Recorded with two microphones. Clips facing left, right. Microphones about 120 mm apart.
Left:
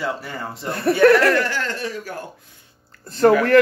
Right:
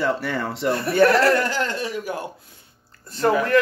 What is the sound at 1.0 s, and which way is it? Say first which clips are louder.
Speech: left 2 dB; 30° right (ahead or behind).